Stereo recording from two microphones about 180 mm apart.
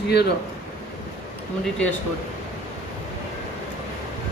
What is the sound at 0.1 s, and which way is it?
Speech, 65° left (ahead or behind).